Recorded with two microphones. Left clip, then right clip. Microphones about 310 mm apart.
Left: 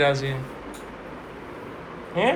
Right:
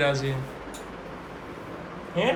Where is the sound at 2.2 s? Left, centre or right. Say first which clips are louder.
Left 3 dB; centre.